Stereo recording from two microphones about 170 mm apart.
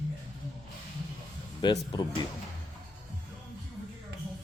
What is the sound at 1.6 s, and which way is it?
Speech, 25° left (ahead or behind).